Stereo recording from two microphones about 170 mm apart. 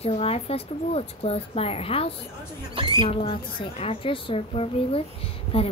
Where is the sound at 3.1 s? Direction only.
35° left (ahead or behind).